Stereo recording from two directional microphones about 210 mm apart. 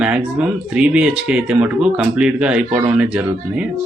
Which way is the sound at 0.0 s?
5° right (ahead or behind).